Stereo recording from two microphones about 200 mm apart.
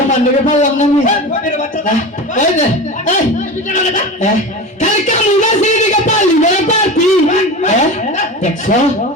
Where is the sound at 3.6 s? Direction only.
35° left (ahead or behind).